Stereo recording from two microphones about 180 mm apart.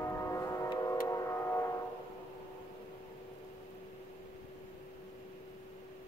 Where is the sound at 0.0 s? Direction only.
15° left (ahead or behind).